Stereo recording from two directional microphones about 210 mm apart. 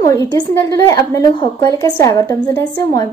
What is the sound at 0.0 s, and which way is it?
A woman's voice, 15° left (ahead or behind).